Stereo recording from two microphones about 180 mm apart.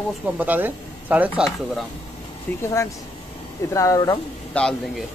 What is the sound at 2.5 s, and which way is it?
Speech, 10° left (ahead or behind).